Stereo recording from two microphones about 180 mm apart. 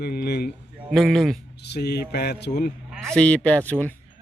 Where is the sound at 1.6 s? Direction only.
70° left (ahead or behind).